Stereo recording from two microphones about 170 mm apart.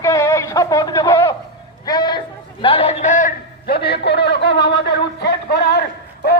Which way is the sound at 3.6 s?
70° left (ahead or behind).